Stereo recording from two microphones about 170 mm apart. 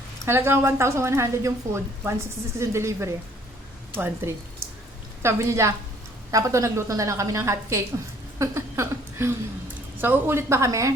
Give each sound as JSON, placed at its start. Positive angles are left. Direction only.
{"t": 0.3, "sound": "speech", "side_deg": -15}
{"t": 8.4, "sound": "a sound", "side_deg": -15}
{"t": 10.0, "sound": "speech", "side_deg": -10}